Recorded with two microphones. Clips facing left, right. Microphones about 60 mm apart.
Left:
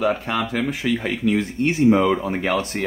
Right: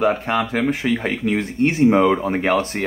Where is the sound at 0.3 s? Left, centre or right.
Right.